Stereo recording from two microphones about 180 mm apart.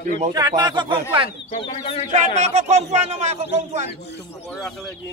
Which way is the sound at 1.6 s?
30° left (ahead or behind).